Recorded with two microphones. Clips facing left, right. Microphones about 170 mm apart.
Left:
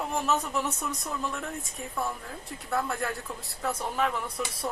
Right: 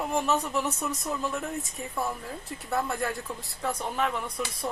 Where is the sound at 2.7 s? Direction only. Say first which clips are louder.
Right 1 dB; centre (ahead or behind).